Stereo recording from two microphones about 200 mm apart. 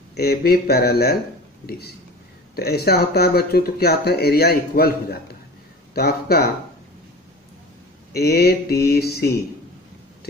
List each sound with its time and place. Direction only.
0.1 s speech: 55° left (ahead or behind)
2.5 s speech: 50° left (ahead or behind)
8.1 s speech: 50° left (ahead or behind)